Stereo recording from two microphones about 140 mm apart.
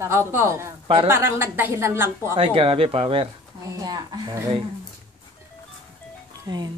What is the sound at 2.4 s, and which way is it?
Speech, 40° right (ahead or behind).